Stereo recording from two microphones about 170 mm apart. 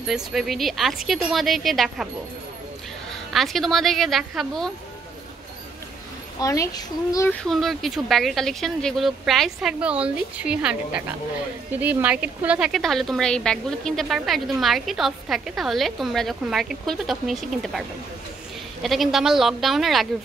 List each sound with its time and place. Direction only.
0.0 s a woman's voice: centre (ahead or behind)
3.1 s a woman's voice: centre (ahead or behind)
6.4 s a child's voice: 20° left (ahead or behind)
7.2 s a woman's voice: centre (ahead or behind)